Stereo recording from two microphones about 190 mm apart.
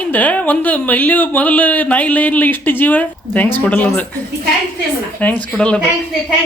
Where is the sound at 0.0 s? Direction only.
10° left (ahead or behind).